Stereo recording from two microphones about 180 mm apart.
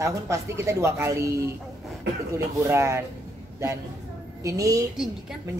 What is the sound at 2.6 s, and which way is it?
Speech, 15° right (ahead or behind).